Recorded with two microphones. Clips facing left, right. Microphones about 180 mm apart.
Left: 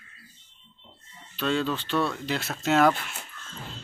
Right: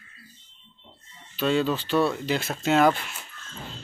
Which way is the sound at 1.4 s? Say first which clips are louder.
Right 3 dB; 5° right (ahead or behind).